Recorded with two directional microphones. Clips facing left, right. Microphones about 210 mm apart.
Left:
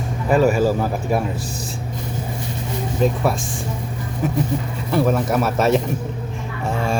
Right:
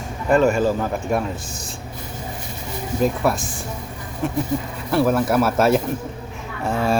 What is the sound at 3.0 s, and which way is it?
Speech, centre (ahead or behind).